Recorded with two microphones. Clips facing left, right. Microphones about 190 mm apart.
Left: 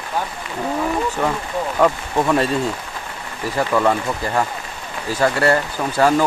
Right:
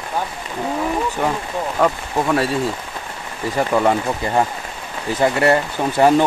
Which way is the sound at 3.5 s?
20° right (ahead or behind).